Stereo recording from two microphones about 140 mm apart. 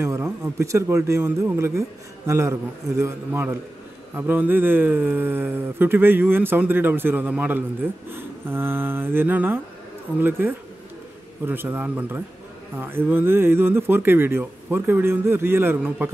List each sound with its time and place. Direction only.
0.0 s a man's voice: 20° right (ahead or behind)